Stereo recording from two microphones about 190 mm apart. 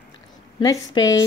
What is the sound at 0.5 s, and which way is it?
Speech, 20° left (ahead or behind).